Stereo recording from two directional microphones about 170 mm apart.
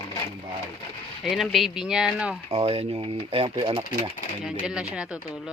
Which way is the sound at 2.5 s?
35° right (ahead or behind).